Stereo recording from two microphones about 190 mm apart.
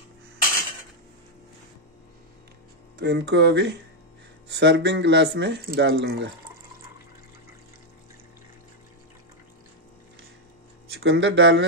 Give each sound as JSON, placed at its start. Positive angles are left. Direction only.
{"t": 3.0, "sound": "speech", "side_deg": -65}
{"t": 11.0, "sound": "speech", "side_deg": -65}